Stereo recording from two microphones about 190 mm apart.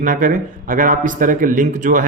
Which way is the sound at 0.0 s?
45° right (ahead or behind).